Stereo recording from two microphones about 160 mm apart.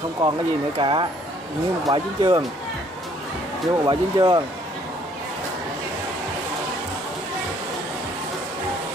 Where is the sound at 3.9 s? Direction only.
30° right (ahead or behind).